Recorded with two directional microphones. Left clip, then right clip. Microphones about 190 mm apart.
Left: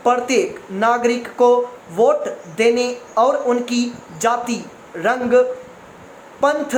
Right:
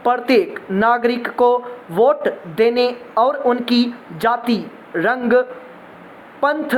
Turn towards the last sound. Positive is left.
turn(degrees=-30)  # may be behind; listen again after turning